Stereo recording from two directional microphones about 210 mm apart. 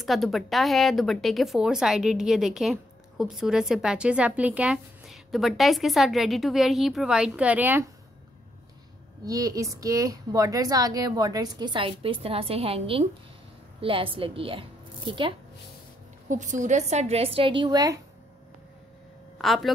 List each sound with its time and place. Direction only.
0.0 s speech: centre (ahead or behind)
9.2 s a woman's voice: 15° right (ahead or behind)
16.3 s a woman's voice: 35° right (ahead or behind); by 18.0 s 15° right (ahead or behind)
19.3 s a woman's voice: centre (ahead or behind)